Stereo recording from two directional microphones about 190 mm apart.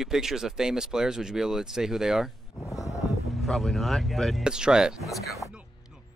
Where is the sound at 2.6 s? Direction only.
15° left (ahead or behind).